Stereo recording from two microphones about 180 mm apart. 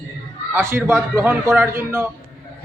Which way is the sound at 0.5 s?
15° right (ahead or behind).